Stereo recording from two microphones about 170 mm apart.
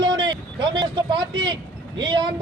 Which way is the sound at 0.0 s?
30° right (ahead or behind).